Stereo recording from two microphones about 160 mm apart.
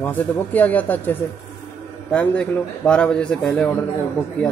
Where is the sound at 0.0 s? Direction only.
10° left (ahead or behind).